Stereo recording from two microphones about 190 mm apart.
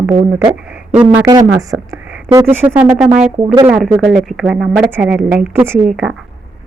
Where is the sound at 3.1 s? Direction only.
35° right (ahead or behind).